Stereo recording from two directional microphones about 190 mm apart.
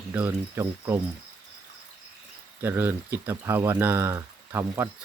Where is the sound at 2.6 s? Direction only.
10° right (ahead or behind).